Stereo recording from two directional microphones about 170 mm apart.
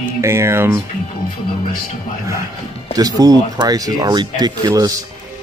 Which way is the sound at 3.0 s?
20° right (ahead or behind).